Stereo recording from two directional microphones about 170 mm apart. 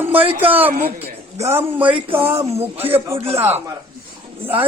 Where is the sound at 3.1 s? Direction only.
35° right (ahead or behind).